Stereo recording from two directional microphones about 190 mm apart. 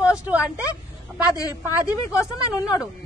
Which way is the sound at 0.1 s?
5° right (ahead or behind).